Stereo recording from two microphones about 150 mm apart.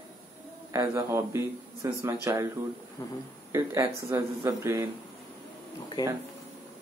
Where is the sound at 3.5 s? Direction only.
20° right (ahead or behind).